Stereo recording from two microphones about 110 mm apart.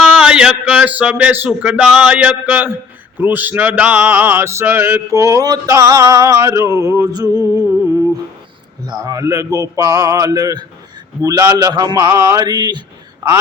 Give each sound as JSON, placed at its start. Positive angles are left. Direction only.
{"t": 0.0, "sound": "a man's voice", "side_deg": -10}
{"t": 3.2, "sound": "mantra", "side_deg": -15}
{"t": 8.9, "sound": "a sound", "side_deg": -35}